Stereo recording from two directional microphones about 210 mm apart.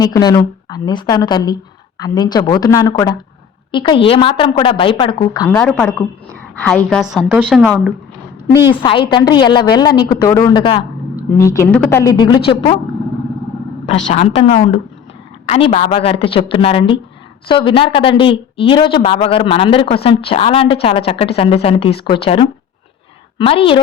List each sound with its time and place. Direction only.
0.0 s speech: 20° left (ahead or behind)
5.5 s a woman's voice: 10° left (ahead or behind)
8.8 s a woman's voice: 25° left (ahead or behind)
14.1 s speech: 30° left (ahead or behind)